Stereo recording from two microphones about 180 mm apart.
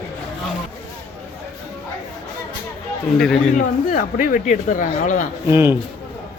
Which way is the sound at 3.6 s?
45° left (ahead or behind).